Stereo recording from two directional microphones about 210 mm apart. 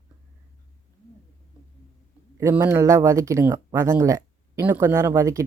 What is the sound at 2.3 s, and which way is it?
Speech, 10° right (ahead or behind).